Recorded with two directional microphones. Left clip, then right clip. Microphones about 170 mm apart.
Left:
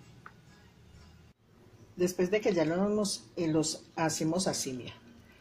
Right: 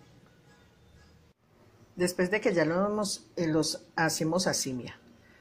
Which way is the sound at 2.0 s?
5° right (ahead or behind).